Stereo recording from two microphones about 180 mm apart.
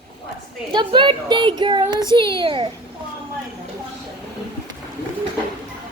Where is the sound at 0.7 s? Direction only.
25° right (ahead or behind).